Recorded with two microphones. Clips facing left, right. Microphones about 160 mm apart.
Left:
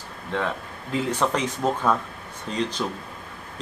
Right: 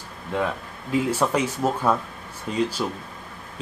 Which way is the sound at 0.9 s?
10° right (ahead or behind).